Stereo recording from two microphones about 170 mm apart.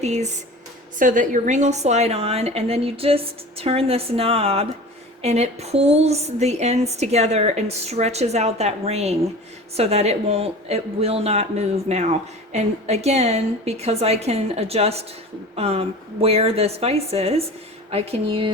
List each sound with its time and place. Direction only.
0.0 s a woman's voice: 40° right (ahead or behind)